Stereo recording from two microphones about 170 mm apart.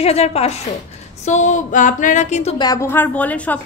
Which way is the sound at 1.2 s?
45° left (ahead or behind).